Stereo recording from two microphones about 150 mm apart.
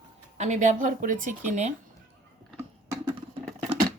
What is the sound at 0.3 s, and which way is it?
Speech, 50° right (ahead or behind).